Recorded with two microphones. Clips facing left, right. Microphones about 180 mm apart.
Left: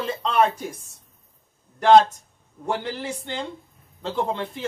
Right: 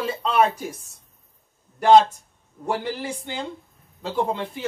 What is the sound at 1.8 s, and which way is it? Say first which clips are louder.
Speech: even; 10° right (ahead or behind).